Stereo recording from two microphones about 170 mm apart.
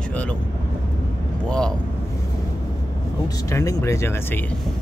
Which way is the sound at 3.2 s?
20° left (ahead or behind).